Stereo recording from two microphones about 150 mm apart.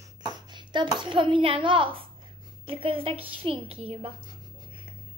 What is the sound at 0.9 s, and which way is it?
A woman's voice, 35° right (ahead or behind).